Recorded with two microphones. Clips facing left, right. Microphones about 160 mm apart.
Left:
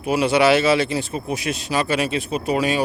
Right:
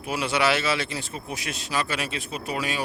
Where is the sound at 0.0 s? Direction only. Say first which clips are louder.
Left 8 dB; 15° left (ahead or behind).